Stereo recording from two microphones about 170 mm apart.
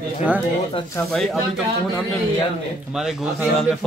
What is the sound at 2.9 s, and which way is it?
Speech, 5° right (ahead or behind).